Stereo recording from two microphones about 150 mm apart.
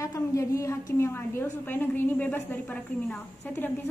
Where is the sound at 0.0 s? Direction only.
20° left (ahead or behind).